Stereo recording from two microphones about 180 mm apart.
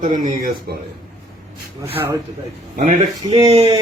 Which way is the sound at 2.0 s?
15° right (ahead or behind).